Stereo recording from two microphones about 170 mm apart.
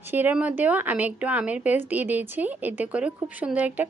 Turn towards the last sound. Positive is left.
turn(degrees=-10)  # may be behind; listen again after turning